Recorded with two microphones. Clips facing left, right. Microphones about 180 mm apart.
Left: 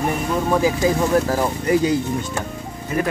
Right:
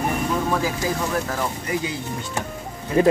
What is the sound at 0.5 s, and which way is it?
Speech, 20° left (ahead or behind).